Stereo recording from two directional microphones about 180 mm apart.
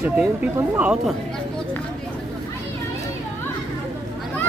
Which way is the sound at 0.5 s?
15° right (ahead or behind).